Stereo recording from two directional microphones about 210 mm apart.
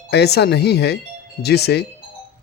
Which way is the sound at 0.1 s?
50° left (ahead or behind).